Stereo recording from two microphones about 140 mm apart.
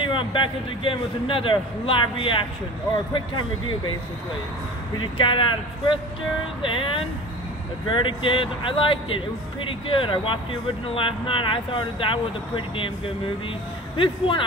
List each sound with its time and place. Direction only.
0.0 s speech: 35° left (ahead or behind)
4.9 s speech: 35° left (ahead or behind)